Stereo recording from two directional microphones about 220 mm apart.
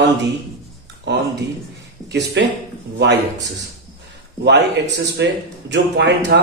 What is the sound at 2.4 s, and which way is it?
Speech, 50° right (ahead or behind).